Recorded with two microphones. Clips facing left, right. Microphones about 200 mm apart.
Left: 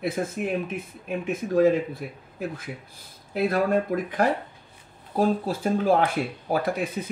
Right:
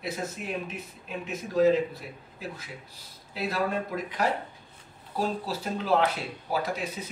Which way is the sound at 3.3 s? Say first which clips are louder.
Left 7 dB; 50° left (ahead or behind).